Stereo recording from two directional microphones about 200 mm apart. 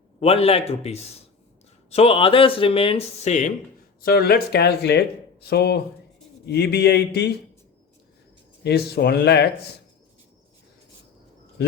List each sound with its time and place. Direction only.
0.2 s a man's voice: 30° left (ahead or behind)
4.0 s speech: 50° left (ahead or behind)
8.6 s speech: 55° left (ahead or behind)